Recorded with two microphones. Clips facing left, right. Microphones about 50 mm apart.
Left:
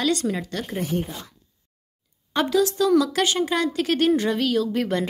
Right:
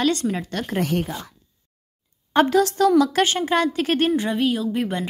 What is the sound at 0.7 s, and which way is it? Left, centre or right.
Speech, right.